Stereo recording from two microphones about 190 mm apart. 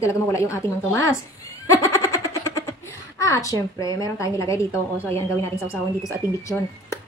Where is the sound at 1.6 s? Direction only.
15° left (ahead or behind).